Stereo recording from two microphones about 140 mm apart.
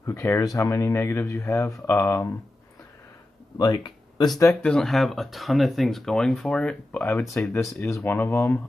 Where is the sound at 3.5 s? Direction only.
30° left (ahead or behind).